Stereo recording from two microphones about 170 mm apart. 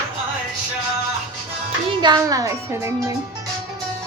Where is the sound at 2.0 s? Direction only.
25° right (ahead or behind).